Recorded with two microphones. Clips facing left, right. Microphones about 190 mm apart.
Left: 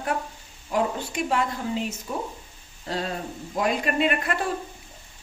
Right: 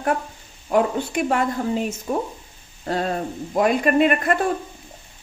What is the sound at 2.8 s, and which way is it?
Hoot, 50° right (ahead or behind).